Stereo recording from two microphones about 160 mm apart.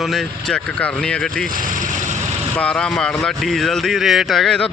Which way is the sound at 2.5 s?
5° left (ahead or behind).